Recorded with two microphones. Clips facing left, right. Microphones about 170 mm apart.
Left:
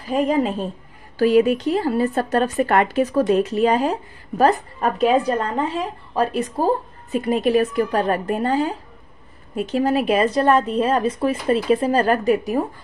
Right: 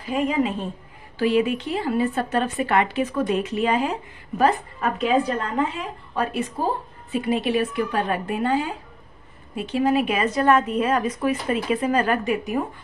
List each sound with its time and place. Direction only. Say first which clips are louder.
0.1 s speech: left 3 dB; 40° left (ahead or behind)